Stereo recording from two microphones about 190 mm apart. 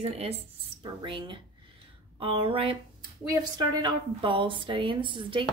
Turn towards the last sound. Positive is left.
turn(degrees=-25)  # may be behind; listen again after turning